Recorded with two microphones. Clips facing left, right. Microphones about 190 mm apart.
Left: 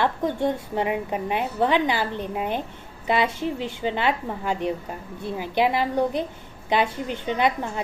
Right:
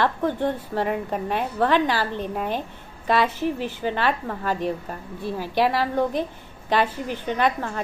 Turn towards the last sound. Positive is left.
turn(degrees=15)  # may be behind; listen again after turning